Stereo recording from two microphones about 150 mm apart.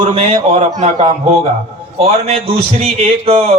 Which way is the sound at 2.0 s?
40° right (ahead or behind).